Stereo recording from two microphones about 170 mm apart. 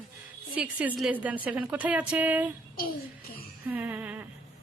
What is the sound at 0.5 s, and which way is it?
A woman's voice, 10° right (ahead or behind).